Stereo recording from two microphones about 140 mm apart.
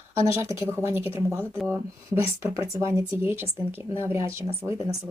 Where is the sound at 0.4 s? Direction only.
20° right (ahead or behind).